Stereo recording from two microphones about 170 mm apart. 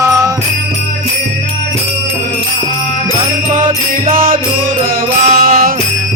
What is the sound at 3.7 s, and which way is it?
Music, 55° right (ahead or behind).